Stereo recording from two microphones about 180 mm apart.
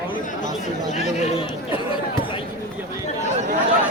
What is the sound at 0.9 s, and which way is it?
Speech, 40° left (ahead or behind).